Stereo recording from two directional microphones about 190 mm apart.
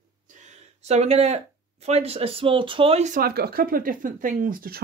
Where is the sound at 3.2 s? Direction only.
55° right (ahead or behind).